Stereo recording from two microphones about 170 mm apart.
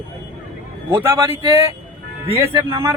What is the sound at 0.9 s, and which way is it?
Speech, 15° right (ahead or behind).